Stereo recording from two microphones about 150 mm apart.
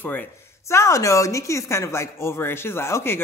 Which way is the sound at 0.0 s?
10° left (ahead or behind).